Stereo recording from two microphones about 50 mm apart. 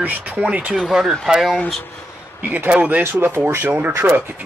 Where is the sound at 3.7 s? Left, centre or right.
Right.